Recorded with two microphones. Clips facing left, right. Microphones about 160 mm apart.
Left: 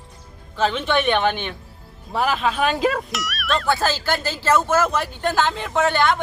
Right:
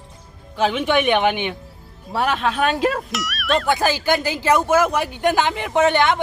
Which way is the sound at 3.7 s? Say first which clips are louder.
Right 2 dB; 15° right (ahead or behind).